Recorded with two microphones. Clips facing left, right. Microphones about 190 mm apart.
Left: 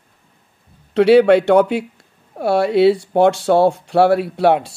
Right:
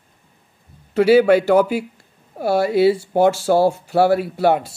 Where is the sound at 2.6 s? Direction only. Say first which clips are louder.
Left 3 dB; 70° left (ahead or behind).